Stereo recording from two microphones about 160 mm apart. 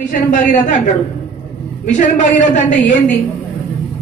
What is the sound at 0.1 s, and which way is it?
Speech, 55° left (ahead or behind).